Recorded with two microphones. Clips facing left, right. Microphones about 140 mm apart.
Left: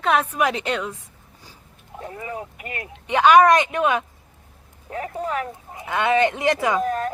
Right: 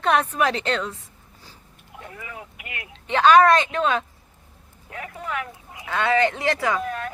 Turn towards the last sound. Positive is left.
turn(degrees=40)  # may be behind; listen again after turning